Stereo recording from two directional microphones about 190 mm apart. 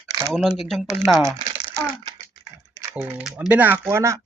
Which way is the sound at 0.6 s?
Centre (ahead or behind).